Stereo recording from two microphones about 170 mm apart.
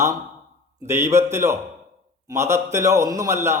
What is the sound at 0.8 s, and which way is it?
A man's voice, 15° right (ahead or behind).